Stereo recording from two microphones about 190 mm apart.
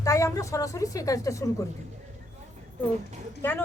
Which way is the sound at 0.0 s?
15° left (ahead or behind).